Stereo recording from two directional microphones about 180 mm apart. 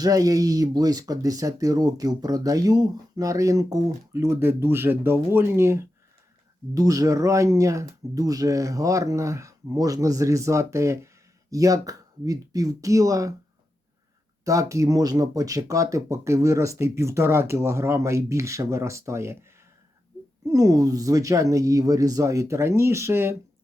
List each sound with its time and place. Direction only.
0.0 s speech: 20° right (ahead or behind)
14.4 s speech: 15° right (ahead or behind)